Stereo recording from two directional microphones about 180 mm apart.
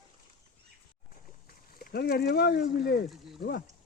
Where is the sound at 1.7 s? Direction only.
60° left (ahead or behind).